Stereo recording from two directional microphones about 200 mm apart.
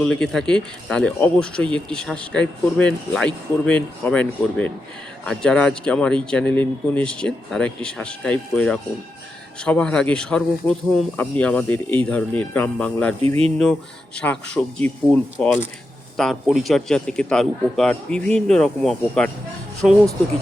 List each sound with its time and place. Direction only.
0.0 s a man's voice: 5° left (ahead or behind)
13.2 s speech: 30° right (ahead or behind)
14.2 s a man's voice: 5° left (ahead or behind)